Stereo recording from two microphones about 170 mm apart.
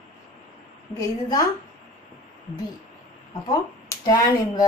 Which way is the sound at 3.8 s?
20° left (ahead or behind).